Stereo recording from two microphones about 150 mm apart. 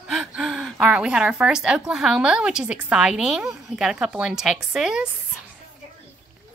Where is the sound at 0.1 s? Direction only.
5° right (ahead or behind).